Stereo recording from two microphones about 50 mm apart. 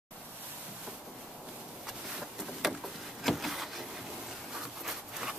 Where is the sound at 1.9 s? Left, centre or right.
Centre.